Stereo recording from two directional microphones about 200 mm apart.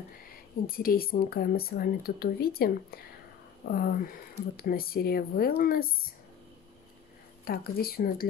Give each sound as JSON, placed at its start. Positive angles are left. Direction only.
{"t": 0.7, "sound": "speech", "side_deg": 45}
{"t": 7.4, "sound": "speech", "side_deg": 50}